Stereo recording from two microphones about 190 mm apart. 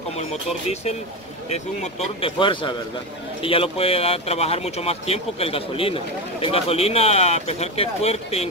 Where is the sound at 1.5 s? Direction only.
35° left (ahead or behind).